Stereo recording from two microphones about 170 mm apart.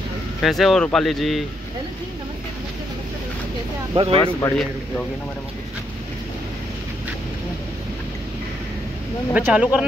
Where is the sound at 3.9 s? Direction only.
30° right (ahead or behind).